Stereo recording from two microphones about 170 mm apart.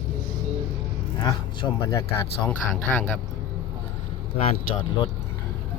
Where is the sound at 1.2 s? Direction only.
20° left (ahead or behind).